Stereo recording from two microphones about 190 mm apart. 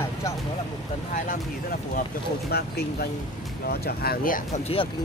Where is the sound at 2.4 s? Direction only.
55° left (ahead or behind).